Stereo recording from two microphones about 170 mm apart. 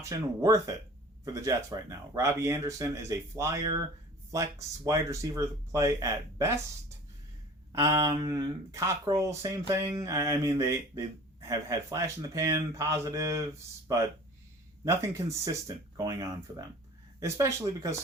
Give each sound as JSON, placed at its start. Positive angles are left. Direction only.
{"t": 0.0, "sound": "speech", "side_deg": -20}
{"t": 7.7, "sound": "speech", "side_deg": -20}
{"t": 14.8, "sound": "speech", "side_deg": -20}